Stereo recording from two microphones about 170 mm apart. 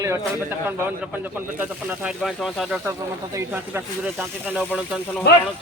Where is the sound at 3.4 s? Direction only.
15° right (ahead or behind).